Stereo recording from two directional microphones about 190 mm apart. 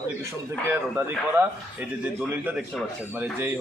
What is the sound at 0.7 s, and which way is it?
A man's voice, 10° right (ahead or behind).